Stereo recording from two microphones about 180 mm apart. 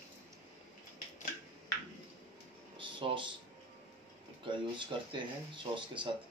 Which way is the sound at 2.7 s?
30° right (ahead or behind).